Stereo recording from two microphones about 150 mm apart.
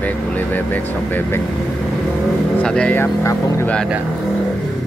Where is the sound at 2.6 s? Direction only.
5° left (ahead or behind).